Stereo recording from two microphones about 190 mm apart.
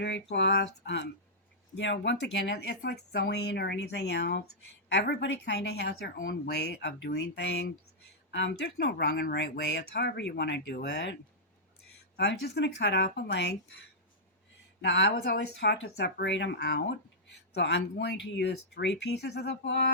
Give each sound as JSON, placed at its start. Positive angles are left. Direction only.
{"t": 0.0, "sound": "a sound", "side_deg": 65}
{"t": 1.7, "sound": "speech", "side_deg": 70}
{"t": 14.8, "sound": "speech", "side_deg": 70}